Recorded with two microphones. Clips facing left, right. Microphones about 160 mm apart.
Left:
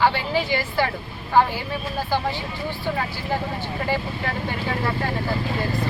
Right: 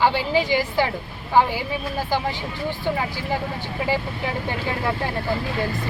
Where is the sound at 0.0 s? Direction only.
15° right (ahead or behind).